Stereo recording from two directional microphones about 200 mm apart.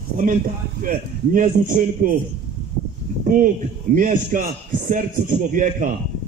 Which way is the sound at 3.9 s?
40° right (ahead or behind).